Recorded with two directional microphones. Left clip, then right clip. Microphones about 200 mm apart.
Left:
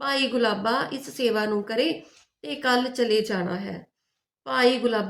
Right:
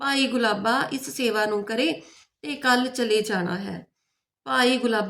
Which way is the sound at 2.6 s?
50° right (ahead or behind).